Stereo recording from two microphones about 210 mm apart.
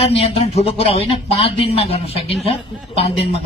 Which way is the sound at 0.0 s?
30° left (ahead or behind).